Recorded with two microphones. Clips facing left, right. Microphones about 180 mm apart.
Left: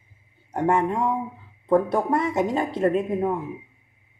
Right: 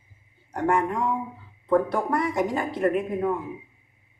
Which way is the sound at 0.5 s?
25° left (ahead or behind).